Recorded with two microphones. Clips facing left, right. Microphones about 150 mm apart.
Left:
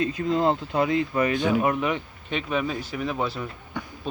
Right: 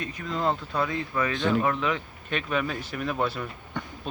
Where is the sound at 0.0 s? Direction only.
25° left (ahead or behind).